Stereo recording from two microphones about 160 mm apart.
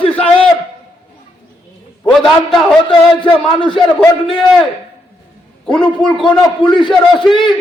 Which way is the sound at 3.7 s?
5° left (ahead or behind).